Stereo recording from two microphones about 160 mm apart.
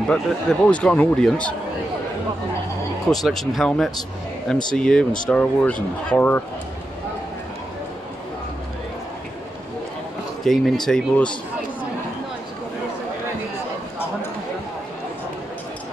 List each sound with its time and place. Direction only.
0.1 s speech: 5° left (ahead or behind)
3.3 s speech: centre (ahead or behind)
10.4 s speech: centre (ahead or behind)